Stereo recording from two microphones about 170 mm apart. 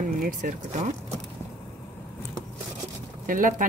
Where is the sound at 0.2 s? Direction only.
50° right (ahead or behind).